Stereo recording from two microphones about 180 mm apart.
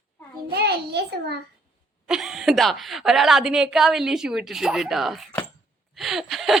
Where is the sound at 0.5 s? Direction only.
65° right (ahead or behind).